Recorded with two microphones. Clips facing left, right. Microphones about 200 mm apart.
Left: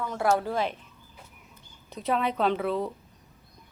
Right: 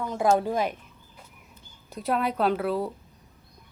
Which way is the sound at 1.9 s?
10° right (ahead or behind).